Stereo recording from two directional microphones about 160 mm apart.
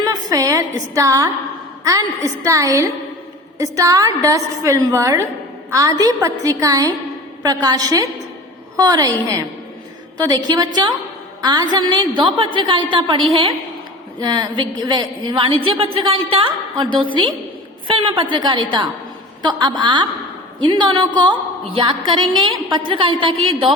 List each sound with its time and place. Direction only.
0.0 s a woman's voice: 25° right (ahead or behind)
18.2 s a woman's voice: 30° right (ahead or behind)